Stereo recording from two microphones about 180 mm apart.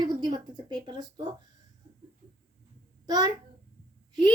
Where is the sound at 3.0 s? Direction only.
20° right (ahead or behind).